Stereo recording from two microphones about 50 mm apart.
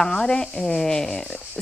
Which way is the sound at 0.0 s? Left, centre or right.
Centre.